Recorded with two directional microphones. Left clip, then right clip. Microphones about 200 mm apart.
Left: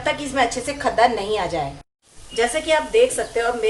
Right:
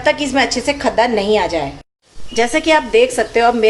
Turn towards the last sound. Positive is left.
turn(degrees=-35)  # may be behind; listen again after turning